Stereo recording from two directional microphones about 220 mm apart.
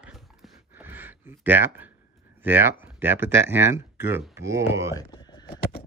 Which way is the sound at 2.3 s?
10° right (ahead or behind).